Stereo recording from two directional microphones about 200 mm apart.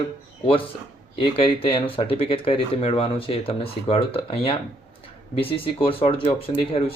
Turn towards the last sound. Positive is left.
turn(degrees=30)  # may be behind; listen again after turning